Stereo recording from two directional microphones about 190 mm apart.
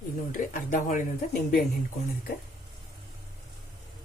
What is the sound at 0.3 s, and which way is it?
Speech, 40° left (ahead or behind).